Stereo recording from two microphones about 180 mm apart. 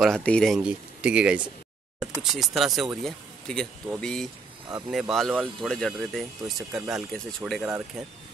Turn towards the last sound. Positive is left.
turn(degrees=0)  # may be behind; listen again after turning